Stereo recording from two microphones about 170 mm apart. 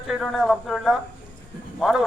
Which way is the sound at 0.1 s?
Centre (ahead or behind).